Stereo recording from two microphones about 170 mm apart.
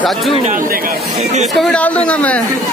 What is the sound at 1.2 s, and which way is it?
Speech, 40° right (ahead or behind).